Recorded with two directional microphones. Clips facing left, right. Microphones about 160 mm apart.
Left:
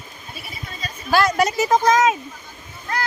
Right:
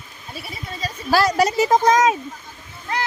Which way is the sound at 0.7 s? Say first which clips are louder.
Even; 35° right (ahead or behind).